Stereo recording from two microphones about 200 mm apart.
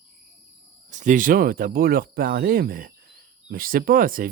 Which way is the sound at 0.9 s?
40° right (ahead or behind).